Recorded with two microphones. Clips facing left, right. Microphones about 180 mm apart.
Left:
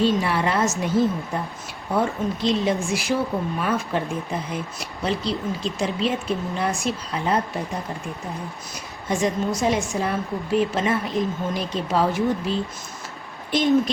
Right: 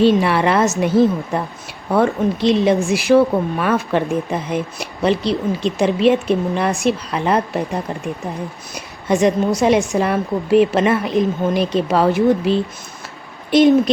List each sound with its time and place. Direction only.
0.0 s a woman's voice: 70° right (ahead or behind)
8.7 s a woman's voice: 70° right (ahead or behind)